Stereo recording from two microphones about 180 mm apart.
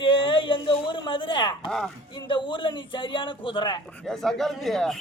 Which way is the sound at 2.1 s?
25° left (ahead or behind).